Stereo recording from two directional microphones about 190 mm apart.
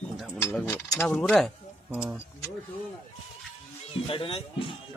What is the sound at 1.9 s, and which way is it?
Speech, 5° right (ahead or behind).